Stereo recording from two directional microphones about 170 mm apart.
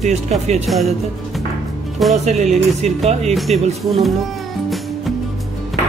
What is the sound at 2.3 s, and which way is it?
Speech, 40° right (ahead or behind).